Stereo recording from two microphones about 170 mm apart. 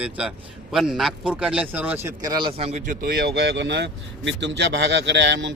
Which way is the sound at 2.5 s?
40° right (ahead or behind).